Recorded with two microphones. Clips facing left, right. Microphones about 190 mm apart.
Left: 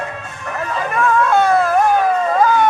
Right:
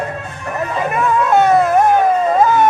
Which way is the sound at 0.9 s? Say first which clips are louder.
Right 1 dB; 20° right (ahead or behind).